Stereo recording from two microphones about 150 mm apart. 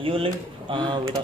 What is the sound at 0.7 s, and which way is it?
Speech, 35° right (ahead or behind).